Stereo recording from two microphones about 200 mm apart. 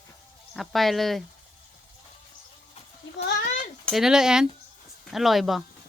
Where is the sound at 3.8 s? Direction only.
Centre (ahead or behind).